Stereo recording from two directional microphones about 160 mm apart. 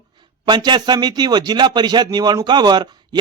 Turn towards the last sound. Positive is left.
turn(degrees=-25)  # may be behind; listen again after turning